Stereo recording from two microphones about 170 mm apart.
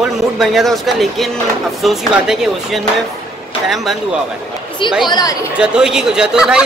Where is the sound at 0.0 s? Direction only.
Centre (ahead or behind).